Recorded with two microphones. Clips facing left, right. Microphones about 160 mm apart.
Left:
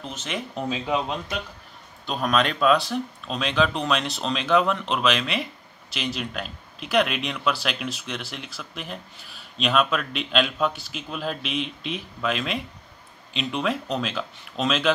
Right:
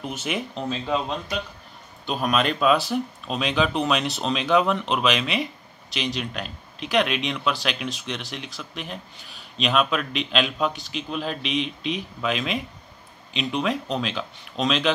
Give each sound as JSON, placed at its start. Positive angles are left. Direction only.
{"t": 0.0, "sound": "speech", "side_deg": -10}
{"t": 0.6, "sound": "speech", "side_deg": 10}
{"t": 2.0, "sound": "speech", "side_deg": -5}